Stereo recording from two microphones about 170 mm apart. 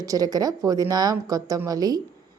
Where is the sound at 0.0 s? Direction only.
20° right (ahead or behind).